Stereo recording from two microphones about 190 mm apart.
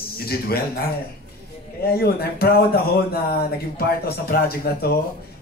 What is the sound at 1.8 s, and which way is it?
Speech, 55° left (ahead or behind).